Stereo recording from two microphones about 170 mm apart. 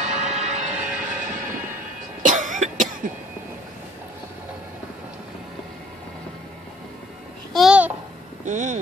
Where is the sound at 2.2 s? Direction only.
50° right (ahead or behind).